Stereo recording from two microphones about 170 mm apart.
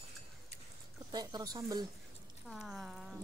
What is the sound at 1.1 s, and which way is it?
Speech, 25° right (ahead or behind).